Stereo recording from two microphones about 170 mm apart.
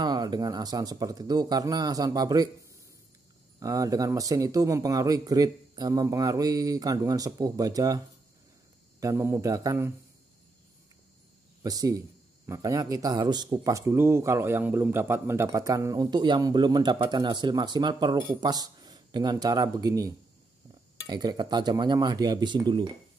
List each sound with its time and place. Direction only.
0.0 s speech: 25° right (ahead or behind)
3.5 s speech: 20° right (ahead or behind)
9.0 s speech: 15° right (ahead or behind)
11.6 s speech: 20° right (ahead or behind)